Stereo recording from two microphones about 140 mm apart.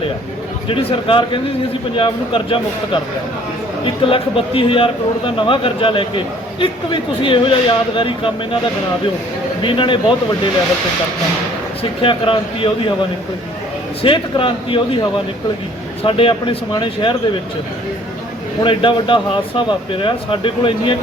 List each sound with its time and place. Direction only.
0.7 s a man's voice: 40° left (ahead or behind)
9.6 s a man's voice: 35° left (ahead or behind)
11.8 s a man's voice: 40° left (ahead or behind)
16.0 s a man's voice: 40° left (ahead or behind)
18.6 s a man's voice: 35° left (ahead or behind)